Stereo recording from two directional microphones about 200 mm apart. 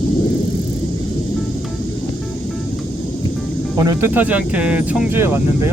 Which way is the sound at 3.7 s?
20° right (ahead or behind).